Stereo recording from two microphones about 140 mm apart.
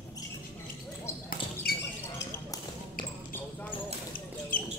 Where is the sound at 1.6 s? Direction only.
90° left.